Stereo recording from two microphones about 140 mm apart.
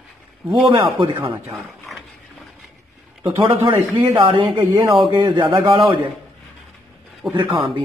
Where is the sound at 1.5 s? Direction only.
Centre (ahead or behind).